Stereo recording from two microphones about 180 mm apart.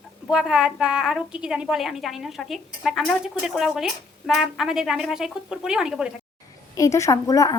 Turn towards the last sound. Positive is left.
turn(degrees=20)  # may be behind; listen again after turning